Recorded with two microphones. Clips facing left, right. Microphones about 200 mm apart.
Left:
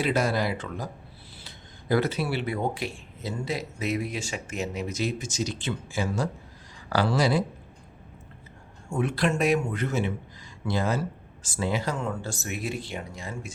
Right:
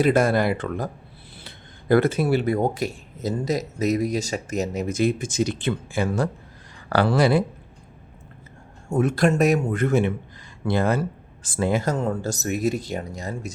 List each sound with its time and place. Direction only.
0.0 s speech: 50° right (ahead or behind)
8.9 s speech: 45° right (ahead or behind)
9.8 s speech: 55° right (ahead or behind)